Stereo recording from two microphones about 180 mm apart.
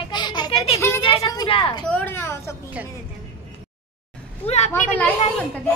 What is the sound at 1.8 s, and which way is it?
Speech, 10° left (ahead or behind).